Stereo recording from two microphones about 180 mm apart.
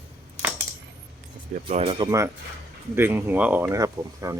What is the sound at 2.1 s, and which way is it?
Speech, 15° right (ahead or behind).